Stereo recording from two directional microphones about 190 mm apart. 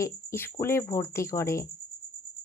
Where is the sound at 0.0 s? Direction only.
15° left (ahead or behind).